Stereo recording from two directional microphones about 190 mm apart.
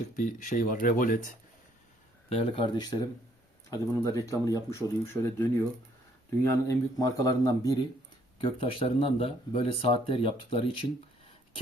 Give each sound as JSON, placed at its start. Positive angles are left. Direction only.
{"t": 0.2, "sound": "speech", "side_deg": 45}
{"t": 2.3, "sound": "speech", "side_deg": 25}
{"t": 8.4, "sound": "speech", "side_deg": 30}